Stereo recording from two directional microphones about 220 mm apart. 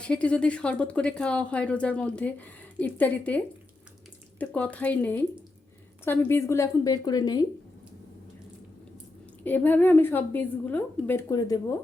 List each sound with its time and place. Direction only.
0.0 s a woman's voice: 5° left (ahead or behind)
9.4 s a woman's voice: 10° left (ahead or behind)